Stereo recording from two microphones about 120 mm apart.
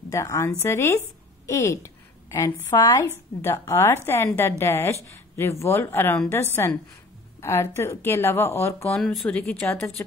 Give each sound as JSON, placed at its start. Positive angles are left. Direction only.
{"t": 0.1, "sound": "a woman's voice", "side_deg": 25}
{"t": 8.9, "sound": "speech", "side_deg": 5}
{"t": 9.5, "sound": "a woman's voice", "side_deg": 15}